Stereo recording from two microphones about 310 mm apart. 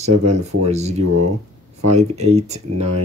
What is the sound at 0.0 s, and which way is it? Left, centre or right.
Speech, right.